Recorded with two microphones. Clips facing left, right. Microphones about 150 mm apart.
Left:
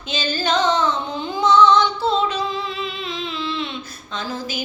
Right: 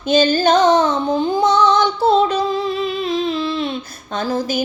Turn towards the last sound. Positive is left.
turn(degrees=-45)  # may be behind; listen again after turning